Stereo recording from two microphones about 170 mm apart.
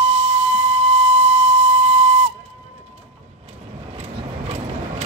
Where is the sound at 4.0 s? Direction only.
35° right (ahead or behind).